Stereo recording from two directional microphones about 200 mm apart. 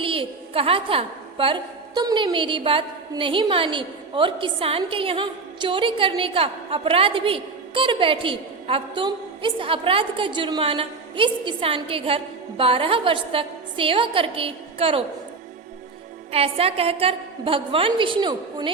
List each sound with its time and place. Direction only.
0.0 s a sound: 25° right (ahead or behind)
2.0 s a woman's voice: 20° right (ahead or behind)
16.3 s a woman's voice: 30° right (ahead or behind)